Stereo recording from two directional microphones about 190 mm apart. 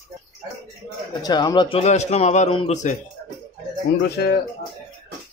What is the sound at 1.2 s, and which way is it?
A man's voice, 20° left (ahead or behind).